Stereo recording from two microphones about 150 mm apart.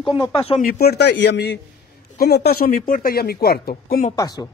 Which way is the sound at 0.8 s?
90° left.